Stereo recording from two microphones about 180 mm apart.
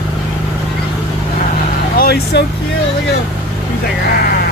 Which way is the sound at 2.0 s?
65° left (ahead or behind).